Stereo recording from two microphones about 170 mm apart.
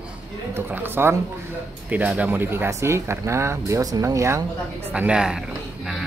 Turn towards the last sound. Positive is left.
turn(degrees=0)  # may be behind; listen again after turning